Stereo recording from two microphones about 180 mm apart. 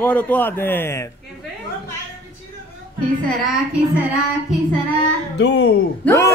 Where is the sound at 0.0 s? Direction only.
10° left (ahead or behind).